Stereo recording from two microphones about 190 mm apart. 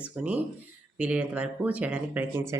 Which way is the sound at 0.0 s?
5° right (ahead or behind).